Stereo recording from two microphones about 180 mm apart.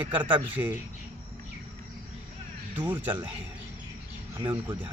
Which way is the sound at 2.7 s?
10° right (ahead or behind).